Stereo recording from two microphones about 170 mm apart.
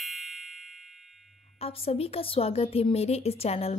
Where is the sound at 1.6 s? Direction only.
35° left (ahead or behind).